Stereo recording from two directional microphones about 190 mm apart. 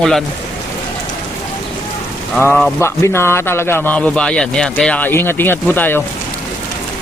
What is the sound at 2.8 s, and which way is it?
A man's voice, 15° left (ahead or behind).